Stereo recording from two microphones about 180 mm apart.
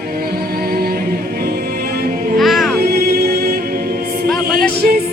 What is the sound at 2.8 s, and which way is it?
Music, 60° right (ahead or behind).